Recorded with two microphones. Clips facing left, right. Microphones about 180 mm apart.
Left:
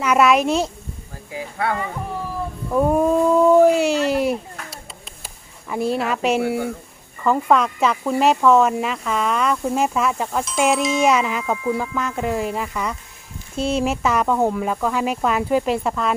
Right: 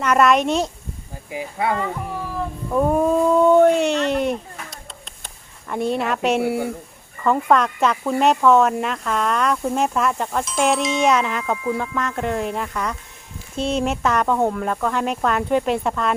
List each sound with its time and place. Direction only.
0.0 s speech: 5° left (ahead or behind)
1.3 s speech: 15° right (ahead or behind)
2.6 s speech: 5° left (ahead or behind)